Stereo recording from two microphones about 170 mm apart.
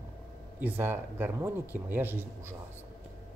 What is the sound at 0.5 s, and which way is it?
Speech, 10° right (ahead or behind).